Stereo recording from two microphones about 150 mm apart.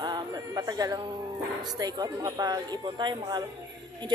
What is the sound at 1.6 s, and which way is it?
Speech, 25° right (ahead or behind).